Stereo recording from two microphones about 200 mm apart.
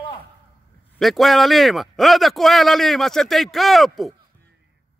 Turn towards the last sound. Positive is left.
turn(degrees=0)  # may be behind; listen again after turning